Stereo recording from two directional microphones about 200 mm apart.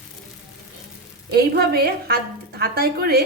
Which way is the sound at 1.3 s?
50° right (ahead or behind).